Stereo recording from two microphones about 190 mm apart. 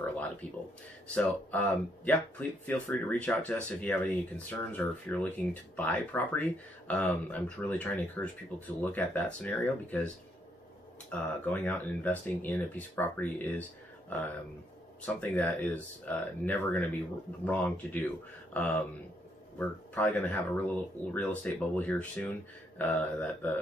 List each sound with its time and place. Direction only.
0.0 s a sound: 10° left (ahead or behind)
1.0 s speech: 5° left (ahead or behind)
11.1 s speech: 10° left (ahead or behind)
19.9 s speech: 10° left (ahead or behind)